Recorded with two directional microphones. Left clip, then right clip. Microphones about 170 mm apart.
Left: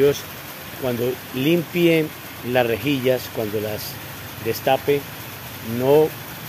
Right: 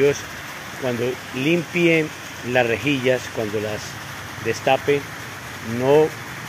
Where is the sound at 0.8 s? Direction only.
20° left (ahead or behind).